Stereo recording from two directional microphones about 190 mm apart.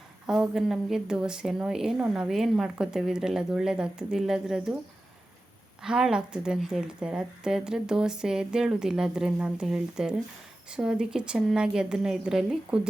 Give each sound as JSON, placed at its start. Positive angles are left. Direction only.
{"t": 0.3, "sound": "speech", "side_deg": 0}
{"t": 5.8, "sound": "speech", "side_deg": -5}